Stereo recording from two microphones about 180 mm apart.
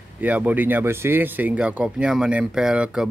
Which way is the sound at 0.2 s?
10° right (ahead or behind).